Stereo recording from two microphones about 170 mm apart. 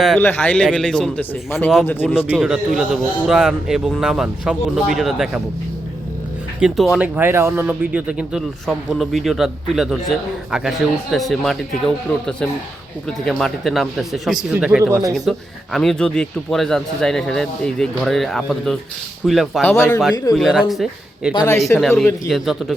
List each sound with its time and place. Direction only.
0.2 s a man's voice: 10° left (ahead or behind)
2.3 s a man's voice: 5° right (ahead or behind)
6.6 s a man's voice: centre (ahead or behind)
7.2 s a man's voice: 15° right (ahead or behind)
14.8 s speech: 15° right (ahead or behind)
15.1 s a man's voice: centre (ahead or behind)
19.6 s speech: 10° left (ahead or behind)
20.3 s a man's voice: centre (ahead or behind)
21.3 s speech: 15° left (ahead or behind)
21.8 s a man's voice: centre (ahead or behind)